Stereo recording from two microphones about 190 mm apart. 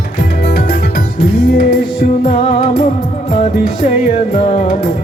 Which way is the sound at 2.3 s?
35° left (ahead or behind).